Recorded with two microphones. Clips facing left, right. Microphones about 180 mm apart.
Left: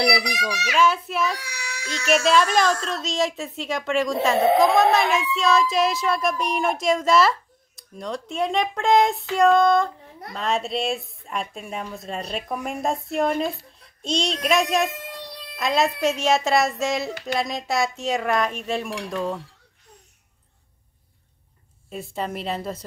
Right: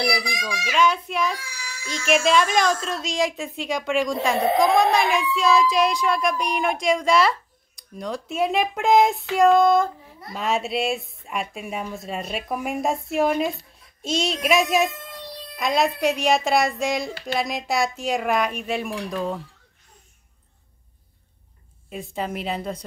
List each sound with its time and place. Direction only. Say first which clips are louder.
0.0 s a child's voice: left 3 dB; 70° left (ahead or behind)
0.7 s speech: even; 5° left (ahead or behind)
1.4 s a sound: left 3 dB; 70° left (ahead or behind)
1.9 s speech: even; centre (ahead or behind)
21.8 s speech: even; centre (ahead or behind)